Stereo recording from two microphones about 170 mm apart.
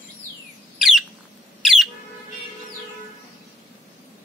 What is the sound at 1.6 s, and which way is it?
Squawk, centre (ahead or behind).